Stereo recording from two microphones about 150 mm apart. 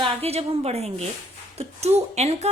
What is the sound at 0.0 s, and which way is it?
A woman's voice, 40° right (ahead or behind).